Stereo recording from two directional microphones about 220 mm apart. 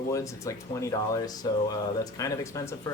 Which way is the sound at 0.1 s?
15° left (ahead or behind).